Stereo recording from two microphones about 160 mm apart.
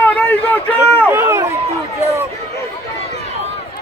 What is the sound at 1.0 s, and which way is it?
Run, 15° right (ahead or behind).